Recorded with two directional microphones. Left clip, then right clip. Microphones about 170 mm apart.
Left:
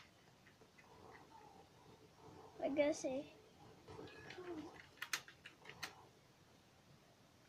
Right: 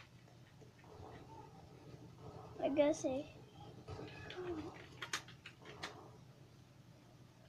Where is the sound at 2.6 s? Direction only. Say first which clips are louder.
Right 4 dB; 20° left (ahead or behind).